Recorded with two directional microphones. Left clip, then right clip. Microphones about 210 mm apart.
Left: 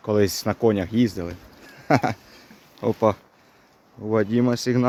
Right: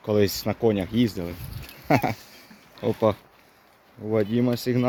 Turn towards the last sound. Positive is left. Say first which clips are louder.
# left 3 dB
turn(degrees=5)  # may be behind; listen again after turning